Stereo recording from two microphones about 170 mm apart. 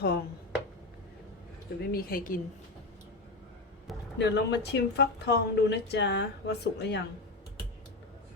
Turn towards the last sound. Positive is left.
turn(degrees=90)